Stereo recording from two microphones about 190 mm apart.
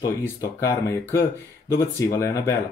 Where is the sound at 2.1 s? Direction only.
15° left (ahead or behind).